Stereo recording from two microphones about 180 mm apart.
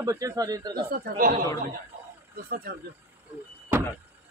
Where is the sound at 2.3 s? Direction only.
55° right (ahead or behind).